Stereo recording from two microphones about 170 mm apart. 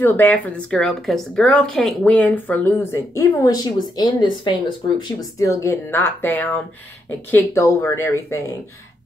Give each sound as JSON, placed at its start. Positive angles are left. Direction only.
{"t": 0.0, "sound": "speech", "side_deg": 10}